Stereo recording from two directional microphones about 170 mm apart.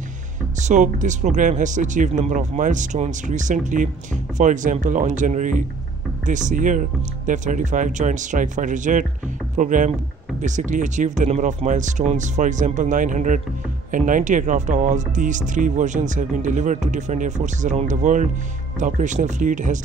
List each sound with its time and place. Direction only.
0.6 s speech: 45° right (ahead or behind)